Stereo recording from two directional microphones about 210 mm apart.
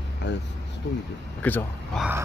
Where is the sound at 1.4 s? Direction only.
10° left (ahead or behind).